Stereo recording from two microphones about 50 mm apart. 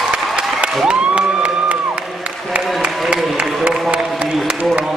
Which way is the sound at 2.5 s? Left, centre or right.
Right.